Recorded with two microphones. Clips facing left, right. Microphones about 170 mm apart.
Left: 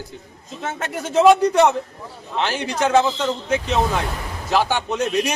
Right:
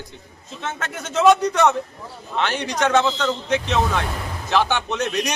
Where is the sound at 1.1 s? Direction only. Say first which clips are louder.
Left 3 dB; 30° left (ahead or behind).